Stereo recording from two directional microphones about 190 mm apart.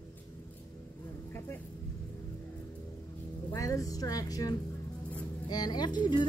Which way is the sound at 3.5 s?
15° left (ahead or behind).